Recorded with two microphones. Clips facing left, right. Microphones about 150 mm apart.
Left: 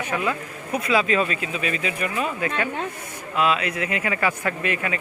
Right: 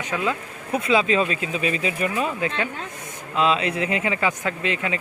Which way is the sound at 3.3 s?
25° right (ahead or behind).